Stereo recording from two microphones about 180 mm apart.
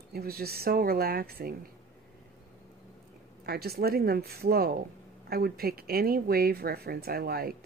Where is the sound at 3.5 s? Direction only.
60° right (ahead or behind).